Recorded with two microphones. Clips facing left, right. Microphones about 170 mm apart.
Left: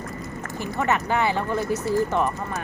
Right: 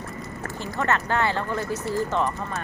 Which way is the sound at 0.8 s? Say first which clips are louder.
Left 1 dB; 15° left (ahead or behind).